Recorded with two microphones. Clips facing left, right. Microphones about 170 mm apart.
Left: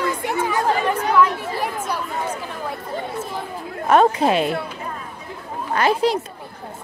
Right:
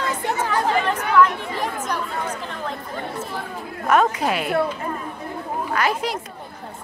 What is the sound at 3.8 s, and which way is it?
Speech, 30° left (ahead or behind).